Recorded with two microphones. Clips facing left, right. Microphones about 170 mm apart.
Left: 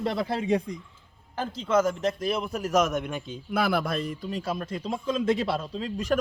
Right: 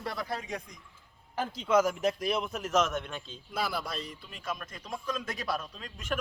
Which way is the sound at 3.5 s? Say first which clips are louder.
Left 8 dB; 60° left (ahead or behind).